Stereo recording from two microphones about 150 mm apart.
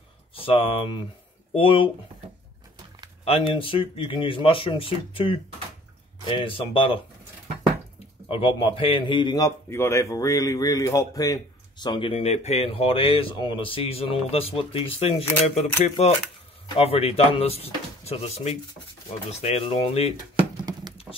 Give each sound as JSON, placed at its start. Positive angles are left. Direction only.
{"t": 0.3, "sound": "speech", "side_deg": 35}
{"t": 3.3, "sound": "speech", "side_deg": 40}
{"t": 8.3, "sound": "a man's voice", "side_deg": 35}
{"t": 20.5, "sound": "a sound", "side_deg": -30}